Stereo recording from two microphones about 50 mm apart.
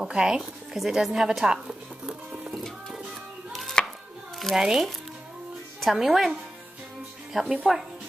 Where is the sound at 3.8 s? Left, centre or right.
Centre.